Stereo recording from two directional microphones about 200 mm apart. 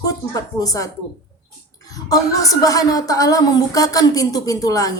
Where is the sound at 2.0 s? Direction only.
15° left (ahead or behind).